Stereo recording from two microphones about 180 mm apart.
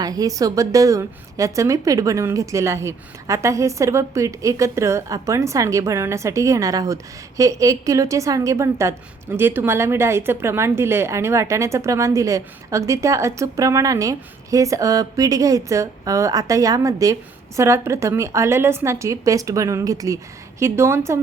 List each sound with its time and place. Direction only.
0.0 s a woman's voice: 20° right (ahead or behind)